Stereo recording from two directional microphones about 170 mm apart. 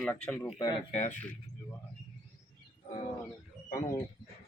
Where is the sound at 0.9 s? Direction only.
45° left (ahead or behind).